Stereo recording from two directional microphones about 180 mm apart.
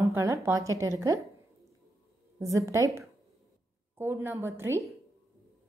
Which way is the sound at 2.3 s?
15° right (ahead or behind).